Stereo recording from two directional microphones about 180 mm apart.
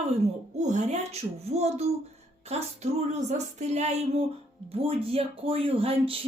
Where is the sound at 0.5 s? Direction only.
40° right (ahead or behind).